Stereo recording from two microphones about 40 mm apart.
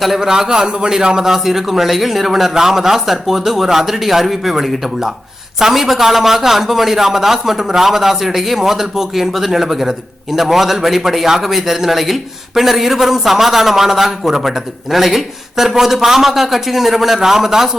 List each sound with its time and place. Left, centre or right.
0.2 s a man's voice: centre
1.3 s a man's voice: centre